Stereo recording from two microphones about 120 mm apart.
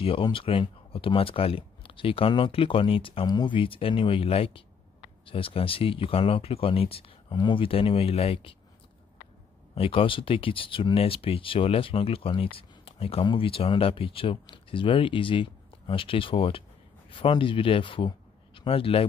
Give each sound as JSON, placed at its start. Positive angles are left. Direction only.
{"t": 0.0, "sound": "speech", "side_deg": 50}
{"t": 9.8, "sound": "speech", "side_deg": 50}